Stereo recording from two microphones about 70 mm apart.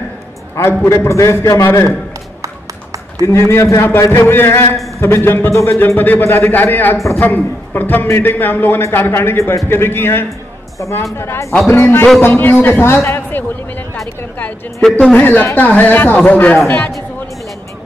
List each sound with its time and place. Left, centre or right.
0.6 s a man's voice: left
3.3 s a man's voice: left
14.8 s speech: centre
15.1 s a man's voice: left